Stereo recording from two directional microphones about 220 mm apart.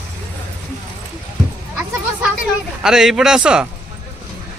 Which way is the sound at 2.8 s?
Centre (ahead or behind).